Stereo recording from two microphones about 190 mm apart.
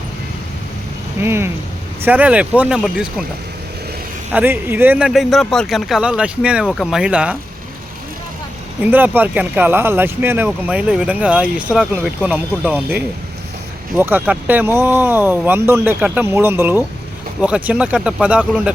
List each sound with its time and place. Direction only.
1.2 s speech: 10° right (ahead or behind)
4.3 s speech: 10° right (ahead or behind)
8.8 s speech: 10° right (ahead or behind)